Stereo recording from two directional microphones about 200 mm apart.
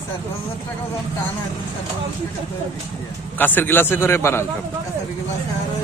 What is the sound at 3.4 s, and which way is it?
A man's voice, 10° left (ahead or behind).